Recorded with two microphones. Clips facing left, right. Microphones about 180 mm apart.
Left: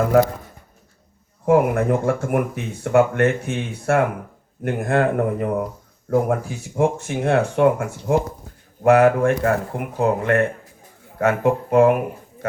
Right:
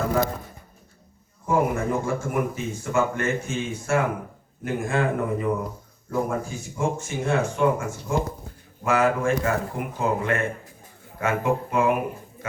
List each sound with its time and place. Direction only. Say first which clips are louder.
1.5 s speech: left 6 dB; 65° left (ahead or behind)